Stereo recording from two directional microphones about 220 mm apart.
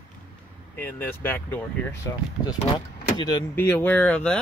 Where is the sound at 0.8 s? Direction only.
10° left (ahead or behind).